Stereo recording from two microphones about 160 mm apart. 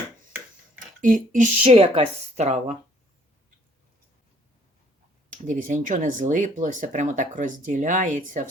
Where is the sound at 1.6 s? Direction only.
35° right (ahead or behind).